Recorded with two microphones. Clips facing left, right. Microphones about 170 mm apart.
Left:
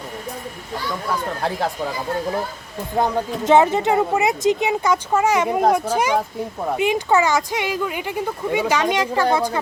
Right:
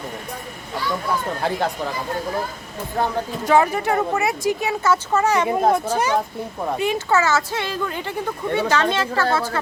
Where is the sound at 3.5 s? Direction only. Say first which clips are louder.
Left 3 dB; 20° left (ahead or behind).